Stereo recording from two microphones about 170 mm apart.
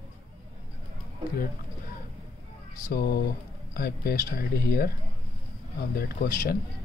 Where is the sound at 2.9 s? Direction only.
65° left (ahead or behind).